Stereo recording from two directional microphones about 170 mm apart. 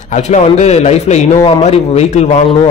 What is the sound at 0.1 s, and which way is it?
Speech, 45° left (ahead or behind).